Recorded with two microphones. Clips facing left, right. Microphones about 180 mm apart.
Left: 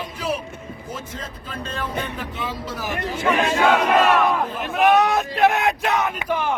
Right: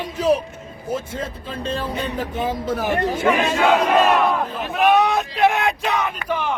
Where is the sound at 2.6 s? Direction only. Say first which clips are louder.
Right 7 dB; 60° right (ahead or behind).